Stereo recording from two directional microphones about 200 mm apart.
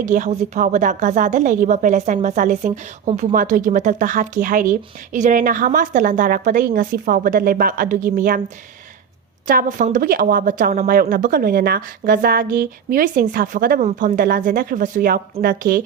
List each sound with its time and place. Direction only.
0.0 s a woman's voice: 40° right (ahead or behind)
9.5 s a woman's voice: 45° right (ahead or behind)